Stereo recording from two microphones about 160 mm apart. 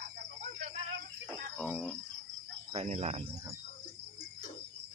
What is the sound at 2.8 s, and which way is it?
Speech, 45° right (ahead or behind).